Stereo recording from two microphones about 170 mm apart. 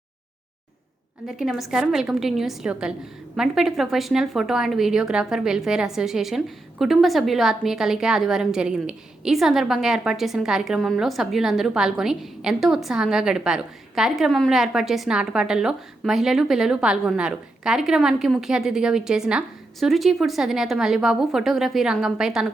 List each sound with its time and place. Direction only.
1.3 s speech: centre (ahead or behind)